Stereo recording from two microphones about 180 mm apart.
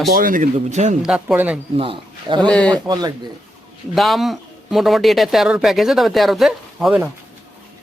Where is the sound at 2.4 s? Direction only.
5° left (ahead or behind).